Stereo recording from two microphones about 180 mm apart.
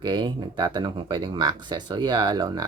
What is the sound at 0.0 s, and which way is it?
Speech, 25° right (ahead or behind).